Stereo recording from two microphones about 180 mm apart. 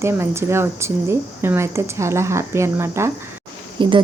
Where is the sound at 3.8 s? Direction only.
25° right (ahead or behind).